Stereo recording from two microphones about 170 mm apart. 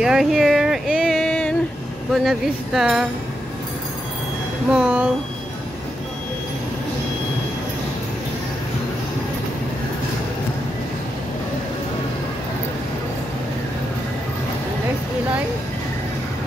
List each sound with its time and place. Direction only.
0.0 s speech: 5° right (ahead or behind)
4.6 s speech: 5° right (ahead or behind)